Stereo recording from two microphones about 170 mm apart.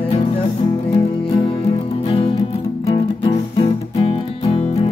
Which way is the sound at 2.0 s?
35° left (ahead or behind).